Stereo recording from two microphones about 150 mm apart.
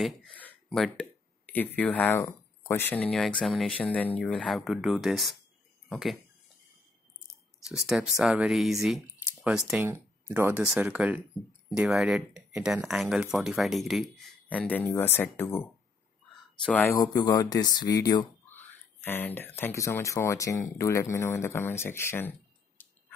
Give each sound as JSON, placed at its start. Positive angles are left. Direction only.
{"t": 0.0, "sound": "speech", "side_deg": 5}
{"t": 7.6, "sound": "speech", "side_deg": -5}
{"t": 16.9, "sound": "speech", "side_deg": 25}
{"t": 18.5, "sound": "speech", "side_deg": 15}
{"t": 22.8, "sound": "a sound", "side_deg": 10}